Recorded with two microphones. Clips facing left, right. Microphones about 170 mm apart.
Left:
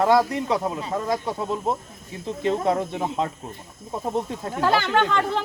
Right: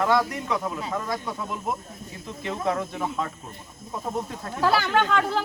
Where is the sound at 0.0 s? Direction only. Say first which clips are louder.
Left 4 dB; 30° left (ahead or behind).